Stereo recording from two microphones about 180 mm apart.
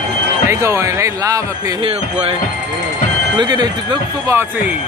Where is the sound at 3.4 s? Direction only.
25° right (ahead or behind).